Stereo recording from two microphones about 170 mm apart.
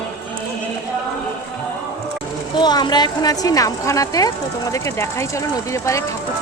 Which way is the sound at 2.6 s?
25° left (ahead or behind).